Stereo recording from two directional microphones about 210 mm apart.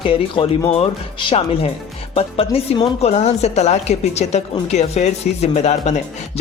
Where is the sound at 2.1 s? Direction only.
25° left (ahead or behind).